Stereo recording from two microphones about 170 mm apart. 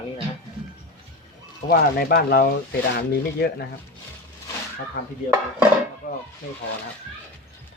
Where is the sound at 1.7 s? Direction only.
65° left (ahead or behind).